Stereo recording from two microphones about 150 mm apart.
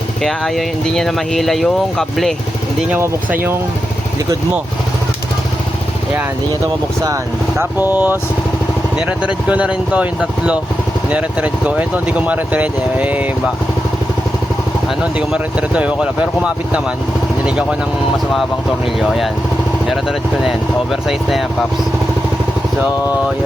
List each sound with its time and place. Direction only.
0.2 s speech: centre (ahead or behind)
7.6 s speech: 15° right (ahead or behind)
15.3 s speech: 5° right (ahead or behind)
19.0 s speech: centre (ahead or behind)